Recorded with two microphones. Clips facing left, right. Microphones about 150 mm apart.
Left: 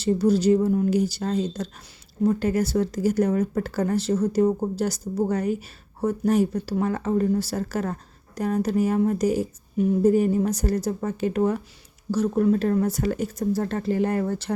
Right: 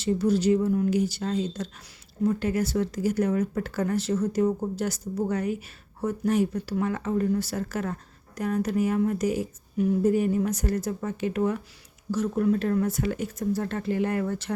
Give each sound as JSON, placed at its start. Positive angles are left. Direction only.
{"t": 0.0, "sound": "speech", "side_deg": 35}